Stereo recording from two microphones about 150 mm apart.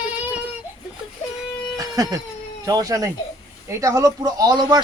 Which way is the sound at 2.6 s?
25° right (ahead or behind).